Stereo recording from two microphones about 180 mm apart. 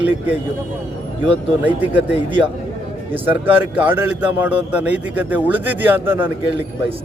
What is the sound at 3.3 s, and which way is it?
A man's voice, 10° right (ahead or behind).